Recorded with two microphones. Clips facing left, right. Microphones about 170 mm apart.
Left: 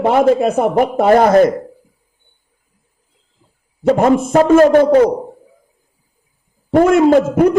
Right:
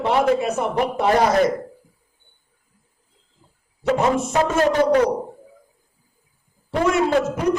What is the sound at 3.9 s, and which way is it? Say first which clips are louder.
Speech: left 7 dB; 50° left (ahead or behind).